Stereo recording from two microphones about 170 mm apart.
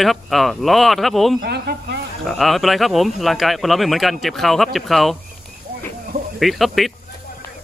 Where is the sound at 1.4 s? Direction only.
75° right (ahead or behind).